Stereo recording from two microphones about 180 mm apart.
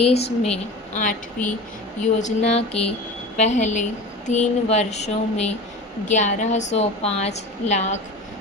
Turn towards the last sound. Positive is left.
turn(degrees=40)  # may be behind; listen again after turning